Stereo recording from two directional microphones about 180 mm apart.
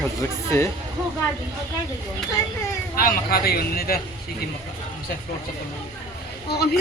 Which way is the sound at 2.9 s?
55° left (ahead or behind).